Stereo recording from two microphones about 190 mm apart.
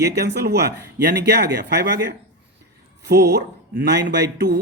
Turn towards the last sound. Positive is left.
turn(degrees=-60)  # may be behind; listen again after turning